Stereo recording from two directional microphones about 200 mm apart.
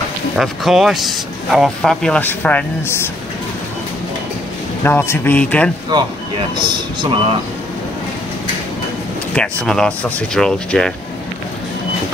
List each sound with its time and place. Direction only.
0.4 s speech: centre (ahead or behind)
4.8 s speech: 10° left (ahead or behind)
6.6 s a man's voice: 25° right (ahead or behind)
9.3 s speech: 5° left (ahead or behind)